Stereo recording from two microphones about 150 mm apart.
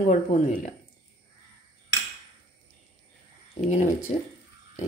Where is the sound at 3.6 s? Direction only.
55° left (ahead or behind).